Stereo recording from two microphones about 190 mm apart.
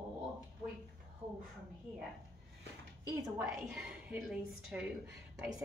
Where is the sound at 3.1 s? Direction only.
15° right (ahead or behind).